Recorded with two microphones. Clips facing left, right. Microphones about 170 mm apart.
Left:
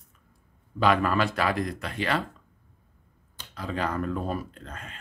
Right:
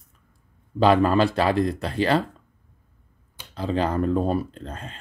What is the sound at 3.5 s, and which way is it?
Speech, 30° right (ahead or behind).